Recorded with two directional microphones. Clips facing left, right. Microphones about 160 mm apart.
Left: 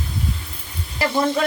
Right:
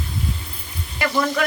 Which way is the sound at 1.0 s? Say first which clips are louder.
Left 1 dB; 30° left (ahead or behind).